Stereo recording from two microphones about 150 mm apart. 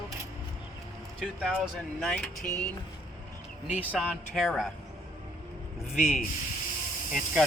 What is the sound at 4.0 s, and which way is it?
Speech, centre (ahead or behind).